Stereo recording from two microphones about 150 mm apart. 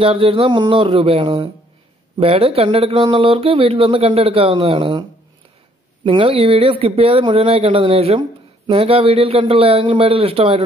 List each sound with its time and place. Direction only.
0.0 s speech: 40° right (ahead or behind)
6.0 s speech: 40° right (ahead or behind)